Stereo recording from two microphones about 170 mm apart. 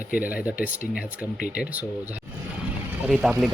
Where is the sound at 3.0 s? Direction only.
Centre (ahead or behind).